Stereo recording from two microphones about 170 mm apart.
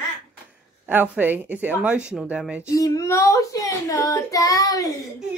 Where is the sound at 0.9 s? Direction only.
10° right (ahead or behind).